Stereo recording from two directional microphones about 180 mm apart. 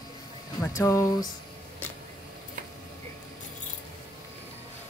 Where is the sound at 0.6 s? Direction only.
15° left (ahead or behind).